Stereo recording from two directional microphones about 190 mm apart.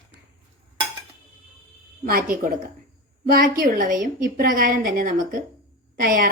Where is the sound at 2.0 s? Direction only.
45° right (ahead or behind).